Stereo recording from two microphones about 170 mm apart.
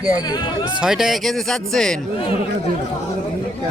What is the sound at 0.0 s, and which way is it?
Speech, 20° left (ahead or behind).